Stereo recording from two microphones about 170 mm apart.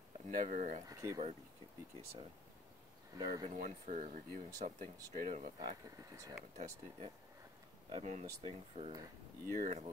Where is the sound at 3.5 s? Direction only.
45° right (ahead or behind).